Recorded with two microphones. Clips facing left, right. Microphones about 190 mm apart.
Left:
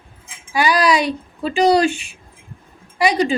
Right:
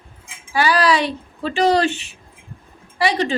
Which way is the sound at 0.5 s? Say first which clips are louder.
Left 1 dB; 15° left (ahead or behind).